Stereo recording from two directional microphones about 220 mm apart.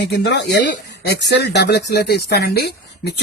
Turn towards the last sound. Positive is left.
turn(degrees=45)  # may be behind; listen again after turning